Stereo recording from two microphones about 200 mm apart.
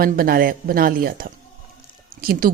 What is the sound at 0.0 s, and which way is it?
A woman's voice, 50° right (ahead or behind).